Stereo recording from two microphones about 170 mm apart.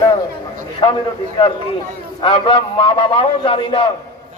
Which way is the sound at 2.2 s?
30° left (ahead or behind).